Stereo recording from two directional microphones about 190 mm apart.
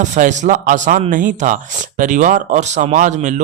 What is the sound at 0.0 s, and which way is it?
Speech, 40° right (ahead or behind).